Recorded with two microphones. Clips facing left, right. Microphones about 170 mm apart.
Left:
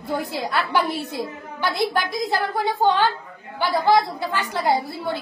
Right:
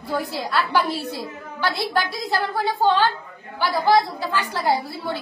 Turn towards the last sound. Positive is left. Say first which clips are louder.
# left 1 dB
turn(degrees=20)  # may be behind; listen again after turning